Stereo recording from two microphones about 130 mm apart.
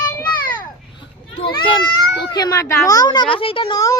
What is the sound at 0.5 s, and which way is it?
Children playing, 35° left (ahead or behind).